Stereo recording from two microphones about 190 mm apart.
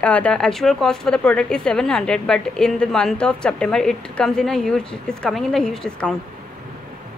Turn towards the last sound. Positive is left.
turn(degrees=5)  # may be behind; listen again after turning